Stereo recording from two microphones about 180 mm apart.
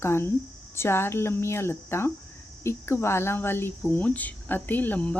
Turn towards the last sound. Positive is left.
turn(degrees=10)  # may be behind; listen again after turning